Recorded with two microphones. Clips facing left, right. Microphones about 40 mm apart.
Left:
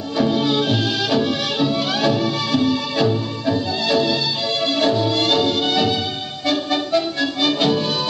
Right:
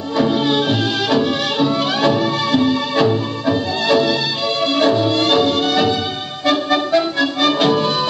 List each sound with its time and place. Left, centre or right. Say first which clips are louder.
0.2 s music: right 2 dB; centre
6.9 s music: right 4 dB; right